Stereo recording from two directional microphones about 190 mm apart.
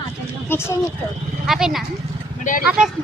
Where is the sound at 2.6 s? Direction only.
5° right (ahead or behind).